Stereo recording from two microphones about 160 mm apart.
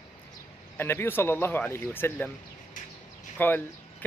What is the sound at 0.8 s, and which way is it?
A man's voice, 15° left (ahead or behind).